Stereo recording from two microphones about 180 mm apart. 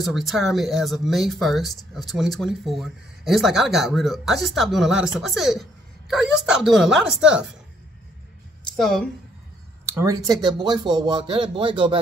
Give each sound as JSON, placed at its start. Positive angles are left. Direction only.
{"t": 0.0, "sound": "speech", "side_deg": 0}
{"t": 8.7, "sound": "speech", "side_deg": 0}
{"t": 9.9, "sound": "speech", "side_deg": -20}